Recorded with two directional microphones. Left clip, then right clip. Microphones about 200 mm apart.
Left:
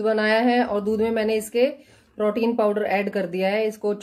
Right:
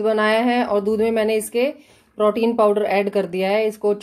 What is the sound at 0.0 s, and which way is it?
Speech, 20° right (ahead or behind).